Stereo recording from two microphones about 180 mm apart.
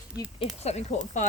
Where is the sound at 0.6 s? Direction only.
40° left (ahead or behind).